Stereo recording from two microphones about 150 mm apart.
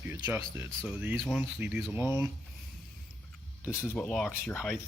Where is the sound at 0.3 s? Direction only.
15° right (ahead or behind).